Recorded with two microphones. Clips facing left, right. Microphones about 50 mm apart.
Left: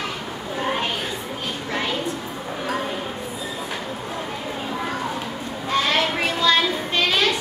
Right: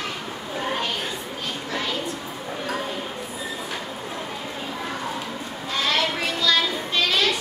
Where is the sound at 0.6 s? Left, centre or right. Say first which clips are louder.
Left 2 dB; centre.